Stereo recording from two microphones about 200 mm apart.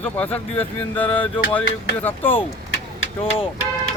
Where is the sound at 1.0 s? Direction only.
25° left (ahead or behind).